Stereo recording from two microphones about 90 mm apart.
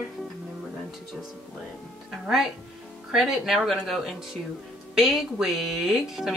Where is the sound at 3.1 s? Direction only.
5° right (ahead or behind).